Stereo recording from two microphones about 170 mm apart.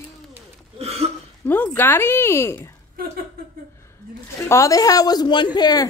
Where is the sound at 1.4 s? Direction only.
10° left (ahead or behind).